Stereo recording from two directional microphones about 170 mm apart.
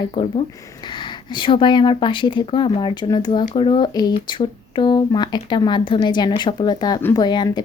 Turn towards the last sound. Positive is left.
turn(degrees=25)  # may be behind; listen again after turning